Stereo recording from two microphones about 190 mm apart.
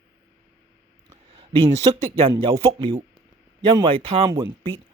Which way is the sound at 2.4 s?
25° right (ahead or behind).